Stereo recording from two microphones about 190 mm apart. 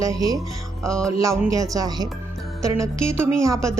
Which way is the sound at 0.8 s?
5° left (ahead or behind).